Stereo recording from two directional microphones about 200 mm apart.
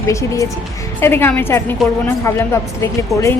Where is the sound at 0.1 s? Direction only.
15° left (ahead or behind).